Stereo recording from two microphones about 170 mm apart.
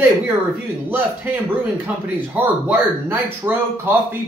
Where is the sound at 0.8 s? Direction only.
10° right (ahead or behind).